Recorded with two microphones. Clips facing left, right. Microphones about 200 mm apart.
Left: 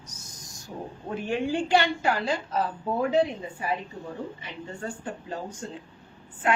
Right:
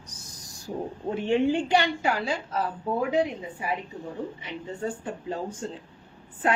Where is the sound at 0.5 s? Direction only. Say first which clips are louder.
Right 5 dB; 30° right (ahead or behind); by 2.3 s 10° right (ahead or behind).